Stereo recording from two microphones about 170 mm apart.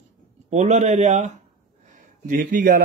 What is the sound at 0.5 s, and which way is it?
Speech, 45° right (ahead or behind).